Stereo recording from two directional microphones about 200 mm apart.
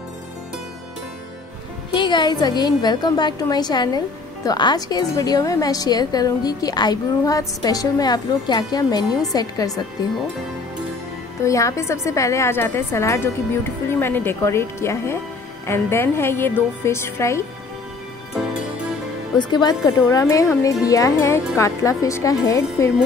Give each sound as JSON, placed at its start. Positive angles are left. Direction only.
{"t": 2.0, "sound": "a woman's voice", "side_deg": 20}
{"t": 11.4, "sound": "a woman's voice", "side_deg": 15}
{"t": 19.3, "sound": "a woman's voice", "side_deg": 20}